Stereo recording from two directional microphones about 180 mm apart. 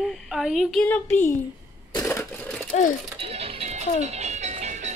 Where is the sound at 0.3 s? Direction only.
Centre (ahead or behind).